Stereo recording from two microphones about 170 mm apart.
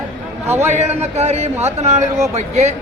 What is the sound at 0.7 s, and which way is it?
A man's voice, 40° right (ahead or behind).